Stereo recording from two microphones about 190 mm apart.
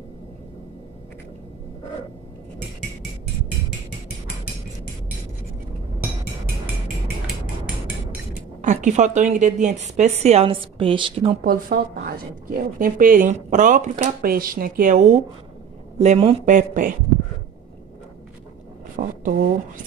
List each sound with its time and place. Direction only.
8.6 s a woman's voice: 40° right (ahead or behind)
11.4 s a woman's voice: 50° right (ahead or behind); by 16.5 s 35° right (ahead or behind)
16.5 s speech: 45° right (ahead or behind)
19.0 s speech: 45° right (ahead or behind)